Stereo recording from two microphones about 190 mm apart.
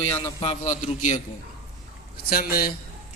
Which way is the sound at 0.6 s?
40° left (ahead or behind).